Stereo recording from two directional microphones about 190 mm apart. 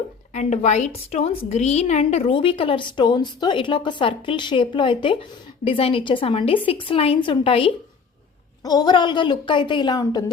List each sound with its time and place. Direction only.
0.3 s a woman's voice: 35° left (ahead or behind); by 10.2 s 20° left (ahead or behind)